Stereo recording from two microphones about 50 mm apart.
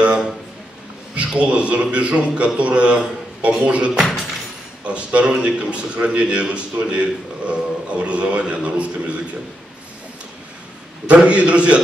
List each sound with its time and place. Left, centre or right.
0.0 s a sound: right
1.1 s a man's voice: right
11.1 s a man's voice: right